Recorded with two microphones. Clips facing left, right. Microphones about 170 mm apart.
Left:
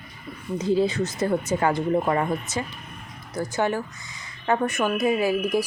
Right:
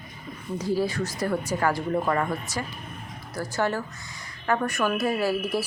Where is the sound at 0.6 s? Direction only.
20° left (ahead or behind).